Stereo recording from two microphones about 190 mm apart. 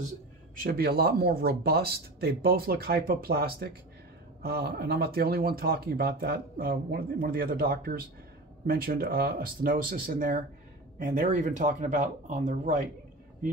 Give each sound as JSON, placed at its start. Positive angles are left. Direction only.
{"t": 0.6, "sound": "speech", "side_deg": -55}